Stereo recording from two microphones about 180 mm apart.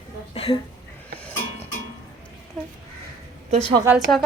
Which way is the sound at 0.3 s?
30° left (ahead or behind).